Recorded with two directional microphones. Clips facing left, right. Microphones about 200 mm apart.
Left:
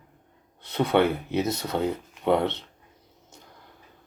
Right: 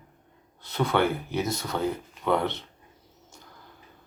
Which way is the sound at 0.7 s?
20° left (ahead or behind).